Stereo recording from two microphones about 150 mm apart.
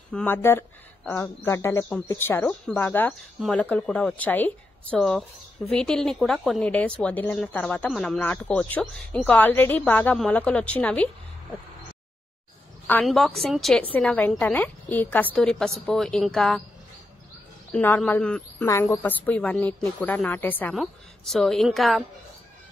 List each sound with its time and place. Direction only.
0.1 s a woman's voice: 10° left (ahead or behind)
3.3 s a woman's voice: centre (ahead or behind)
13.0 s a woman's voice: centre (ahead or behind)
17.7 s a woman's voice: 10° left (ahead or behind)
20.7 s speech: centre (ahead or behind)